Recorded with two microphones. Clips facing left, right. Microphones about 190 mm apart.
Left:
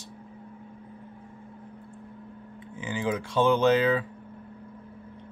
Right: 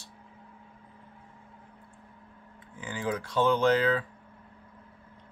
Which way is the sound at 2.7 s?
25° left (ahead or behind).